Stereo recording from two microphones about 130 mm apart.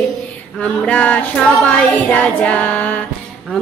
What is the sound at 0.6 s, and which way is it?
Child singing, 10° left (ahead or behind).